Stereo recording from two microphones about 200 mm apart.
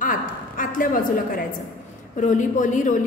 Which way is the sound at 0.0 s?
45° left (ahead or behind).